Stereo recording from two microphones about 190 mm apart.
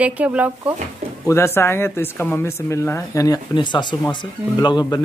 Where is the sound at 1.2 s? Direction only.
15° left (ahead or behind).